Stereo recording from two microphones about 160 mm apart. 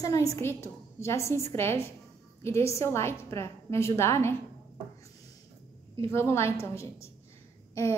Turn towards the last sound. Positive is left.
turn(degrees=20)  # may be behind; listen again after turning